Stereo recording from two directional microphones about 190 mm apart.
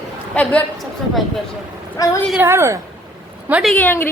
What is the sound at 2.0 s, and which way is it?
Speech, 20° left (ahead or behind).